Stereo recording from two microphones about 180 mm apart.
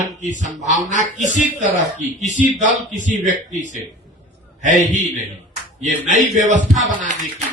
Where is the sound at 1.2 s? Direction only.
45° left (ahead or behind).